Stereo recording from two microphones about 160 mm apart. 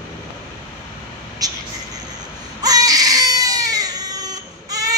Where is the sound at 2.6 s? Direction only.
25° right (ahead or behind).